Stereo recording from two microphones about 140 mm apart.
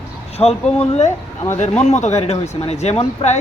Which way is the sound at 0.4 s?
35° left (ahead or behind).